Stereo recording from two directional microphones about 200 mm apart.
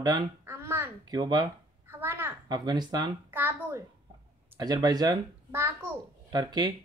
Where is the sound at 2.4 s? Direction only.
20° right (ahead or behind).